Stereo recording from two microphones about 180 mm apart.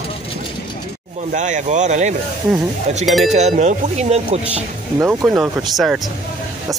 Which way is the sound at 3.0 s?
Centre (ahead or behind).